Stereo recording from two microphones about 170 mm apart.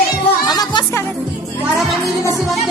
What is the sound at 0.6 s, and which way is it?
Music, 20° left (ahead or behind).